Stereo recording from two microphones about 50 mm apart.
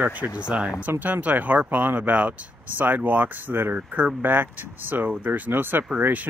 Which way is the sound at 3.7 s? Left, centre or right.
Right.